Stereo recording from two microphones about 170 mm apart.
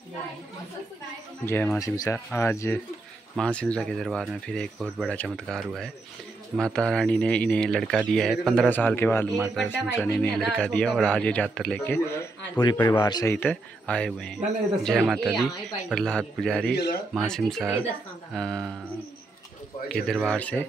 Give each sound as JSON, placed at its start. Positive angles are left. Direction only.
{"t": 1.4, "sound": "a man's voice", "side_deg": 10}
{"t": 6.6, "sound": "speech", "side_deg": 5}
{"t": 9.3, "sound": "a man's voice", "side_deg": 0}
{"t": 13.3, "sound": "speech", "side_deg": 5}
{"t": 16.7, "sound": "speech", "side_deg": 65}
{"t": 17.3, "sound": "speech", "side_deg": 0}
{"t": 20.2, "sound": "speech", "side_deg": 10}